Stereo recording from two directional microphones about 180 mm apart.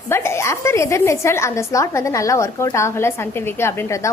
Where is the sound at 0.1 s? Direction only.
15° left (ahead or behind).